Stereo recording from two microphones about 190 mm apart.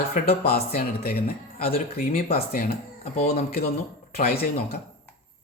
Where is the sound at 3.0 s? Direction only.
35° left (ahead or behind).